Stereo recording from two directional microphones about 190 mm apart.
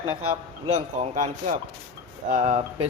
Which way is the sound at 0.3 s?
40° right (ahead or behind).